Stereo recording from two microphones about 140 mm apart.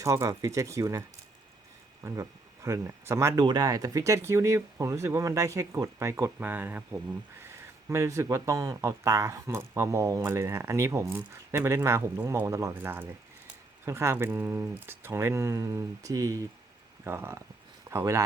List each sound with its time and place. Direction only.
0.0 s speech: 20° right (ahead or behind)